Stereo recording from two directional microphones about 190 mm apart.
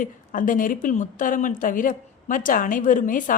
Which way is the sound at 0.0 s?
45° left (ahead or behind).